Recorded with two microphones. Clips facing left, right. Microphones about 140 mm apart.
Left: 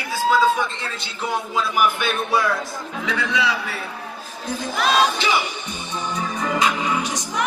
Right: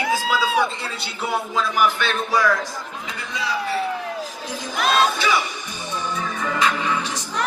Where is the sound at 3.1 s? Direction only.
80° left.